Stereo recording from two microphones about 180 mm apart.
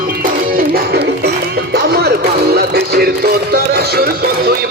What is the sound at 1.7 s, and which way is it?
Music, 70° right (ahead or behind).